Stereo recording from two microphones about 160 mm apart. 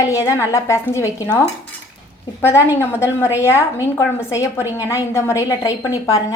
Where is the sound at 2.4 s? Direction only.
15° left (ahead or behind).